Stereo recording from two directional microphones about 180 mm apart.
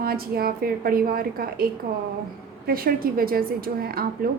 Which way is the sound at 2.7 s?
55° right (ahead or behind).